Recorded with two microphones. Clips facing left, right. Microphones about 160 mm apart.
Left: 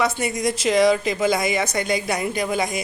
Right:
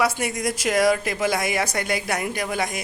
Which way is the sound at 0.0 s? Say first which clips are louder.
Left 1 dB; 10° right (ahead or behind).